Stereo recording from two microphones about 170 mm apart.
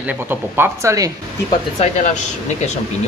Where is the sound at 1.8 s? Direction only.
45° left (ahead or behind).